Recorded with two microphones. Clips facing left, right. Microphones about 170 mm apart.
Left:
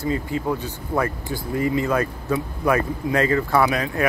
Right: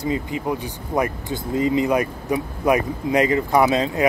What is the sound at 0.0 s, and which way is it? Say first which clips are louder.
Speech: even; 20° right (ahead or behind).